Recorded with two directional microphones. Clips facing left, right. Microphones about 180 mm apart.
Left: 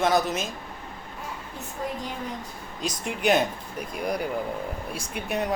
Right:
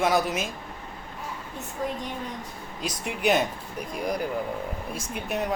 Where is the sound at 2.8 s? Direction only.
5° right (ahead or behind).